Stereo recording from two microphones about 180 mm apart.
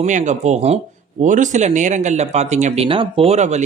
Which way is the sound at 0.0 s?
45° right (ahead or behind).